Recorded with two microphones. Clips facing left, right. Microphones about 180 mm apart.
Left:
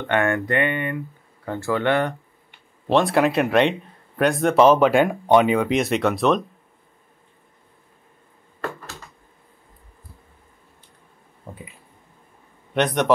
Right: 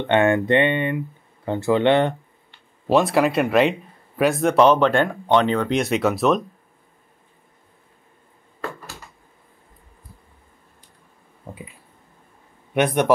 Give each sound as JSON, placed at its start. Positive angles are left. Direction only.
{"t": 0.0, "sound": "speech", "side_deg": -20}
{"t": 2.9, "sound": "speech", "side_deg": 0}
{"t": 12.7, "sound": "a man's voice", "side_deg": -10}